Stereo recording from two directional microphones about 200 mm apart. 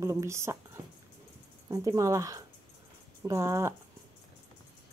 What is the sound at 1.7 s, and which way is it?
Speech, 15° right (ahead or behind).